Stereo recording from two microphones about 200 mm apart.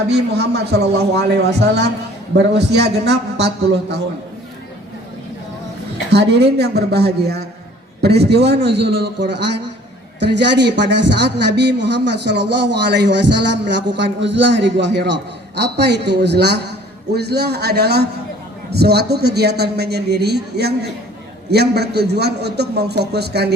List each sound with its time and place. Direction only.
0.1 s speech: 55° right (ahead or behind)
6.1 s speech: 55° right (ahead or behind)